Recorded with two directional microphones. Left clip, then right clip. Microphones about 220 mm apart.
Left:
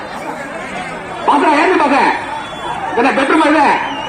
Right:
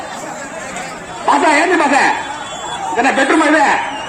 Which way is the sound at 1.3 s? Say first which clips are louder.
Left 1 dB; 50° right (ahead or behind).